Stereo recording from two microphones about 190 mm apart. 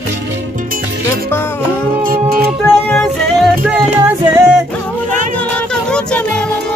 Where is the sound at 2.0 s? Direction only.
50° right (ahead or behind).